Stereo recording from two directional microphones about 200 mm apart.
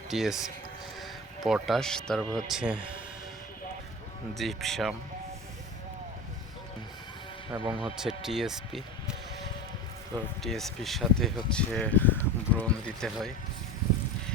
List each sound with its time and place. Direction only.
0.1 s speech: centre (ahead or behind)
4.4 s speech: centre (ahead or behind)
7.5 s speech: 10° right (ahead or behind)
10.4 s speech: centre (ahead or behind)